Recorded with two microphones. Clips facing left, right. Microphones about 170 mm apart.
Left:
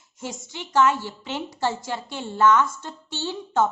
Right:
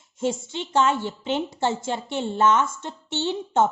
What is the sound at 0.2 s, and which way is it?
A woman's voice, 25° right (ahead or behind).